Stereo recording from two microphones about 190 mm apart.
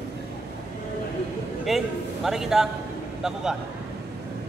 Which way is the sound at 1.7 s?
Centre (ahead or behind).